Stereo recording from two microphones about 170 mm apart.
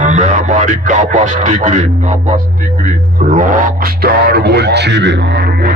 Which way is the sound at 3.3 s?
60° right (ahead or behind).